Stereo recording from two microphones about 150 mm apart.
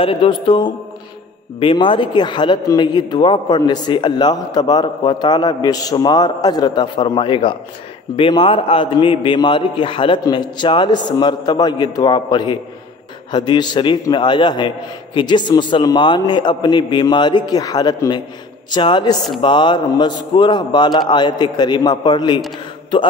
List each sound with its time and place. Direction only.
0.0 s a man's voice: 35° left (ahead or behind)